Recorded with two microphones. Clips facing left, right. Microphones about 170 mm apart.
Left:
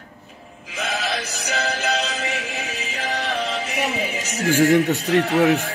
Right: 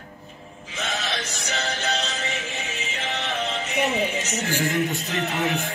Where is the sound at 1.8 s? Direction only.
10° left (ahead or behind).